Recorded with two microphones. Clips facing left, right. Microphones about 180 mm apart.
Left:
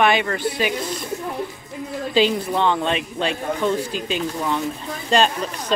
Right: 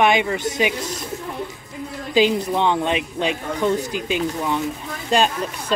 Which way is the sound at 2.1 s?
15° right (ahead or behind).